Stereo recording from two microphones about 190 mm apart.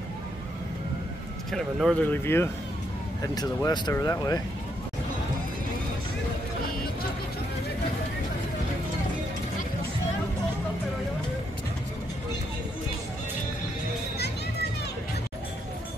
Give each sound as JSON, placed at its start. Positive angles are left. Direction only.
{"t": 1.5, "sound": "speech", "side_deg": 0}
{"t": 2.2, "sound": "speech", "side_deg": 10}